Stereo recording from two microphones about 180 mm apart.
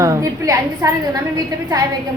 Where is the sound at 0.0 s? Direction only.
20° right (ahead or behind).